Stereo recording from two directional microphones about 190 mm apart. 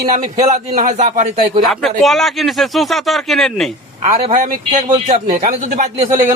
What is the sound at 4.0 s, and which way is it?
A man's voice, 40° right (ahead or behind).